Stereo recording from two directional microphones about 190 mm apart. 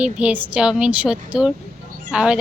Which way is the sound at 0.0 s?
5° right (ahead or behind).